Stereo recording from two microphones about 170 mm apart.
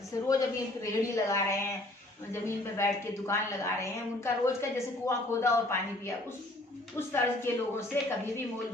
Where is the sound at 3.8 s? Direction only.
15° left (ahead or behind).